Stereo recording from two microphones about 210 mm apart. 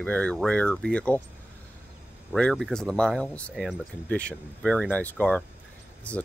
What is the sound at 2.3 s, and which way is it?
Speech, 5° left (ahead or behind).